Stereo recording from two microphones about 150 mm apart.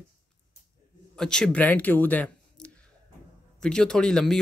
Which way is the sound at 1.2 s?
5° left (ahead or behind).